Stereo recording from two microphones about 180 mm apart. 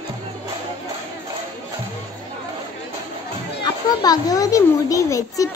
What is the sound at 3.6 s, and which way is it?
A child's voice, 20° left (ahead or behind).